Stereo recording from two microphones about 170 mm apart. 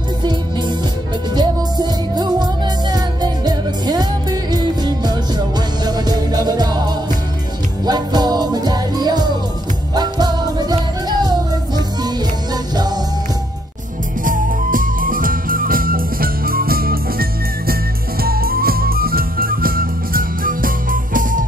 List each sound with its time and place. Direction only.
0.2 s music: 25° right (ahead or behind)
14.2 s music: 50° right (ahead or behind)